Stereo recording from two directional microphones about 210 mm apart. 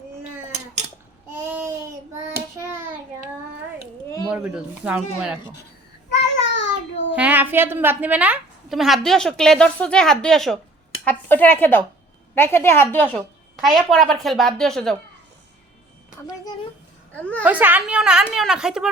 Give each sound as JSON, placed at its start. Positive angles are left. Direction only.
{"t": 1.5, "sound": "a sound", "side_deg": -10}
{"t": 4.3, "sound": "a woman's voice", "side_deg": -5}
{"t": 6.4, "sound": "child singing", "side_deg": 60}
{"t": 7.2, "sound": "a woman's voice", "side_deg": -10}
{"t": 17.1, "sound": "a woman's voice", "side_deg": 5}
{"t": 17.4, "sound": "a woman's voice", "side_deg": -10}